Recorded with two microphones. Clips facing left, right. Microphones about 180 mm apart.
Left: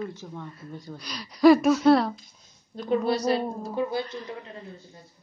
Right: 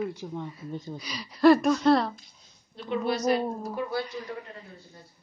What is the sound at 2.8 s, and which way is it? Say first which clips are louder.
A woman's voice: left 4 dB; 40° left (ahead or behind).